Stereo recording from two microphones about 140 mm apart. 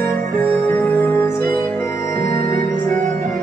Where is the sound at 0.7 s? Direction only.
20° left (ahead or behind).